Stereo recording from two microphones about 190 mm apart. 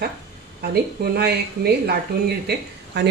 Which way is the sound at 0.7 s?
55° right (ahead or behind).